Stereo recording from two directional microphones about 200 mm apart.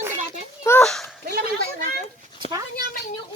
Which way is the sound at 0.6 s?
10° left (ahead or behind).